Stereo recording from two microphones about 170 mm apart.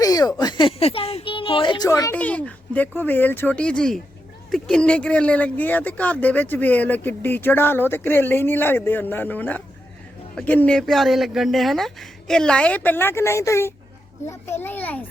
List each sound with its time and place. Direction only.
0.0 s speech: 20° left (ahead or behind)
1.9 s speech: 15° left (ahead or behind)